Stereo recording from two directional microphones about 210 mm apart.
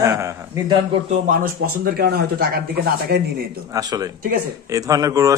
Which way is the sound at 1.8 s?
45° right (ahead or behind).